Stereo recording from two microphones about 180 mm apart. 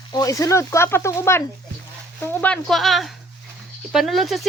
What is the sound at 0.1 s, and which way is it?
Speech, 20° left (ahead or behind).